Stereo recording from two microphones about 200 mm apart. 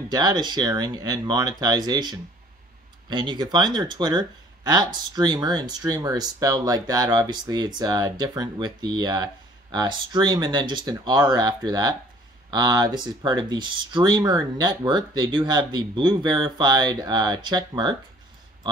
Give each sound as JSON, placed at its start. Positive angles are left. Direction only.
{"t": 0.1, "sound": "speech", "side_deg": -20}